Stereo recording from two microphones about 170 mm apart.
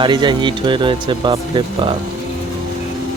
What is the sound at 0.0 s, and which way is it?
Speech, 25° right (ahead or behind).